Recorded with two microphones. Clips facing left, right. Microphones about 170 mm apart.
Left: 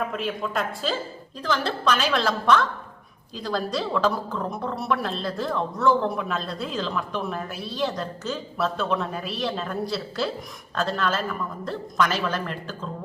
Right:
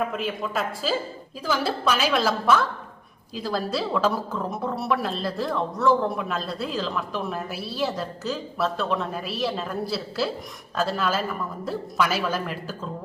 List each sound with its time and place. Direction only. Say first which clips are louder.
0.1 s a woman's voice: even; centre (ahead or behind)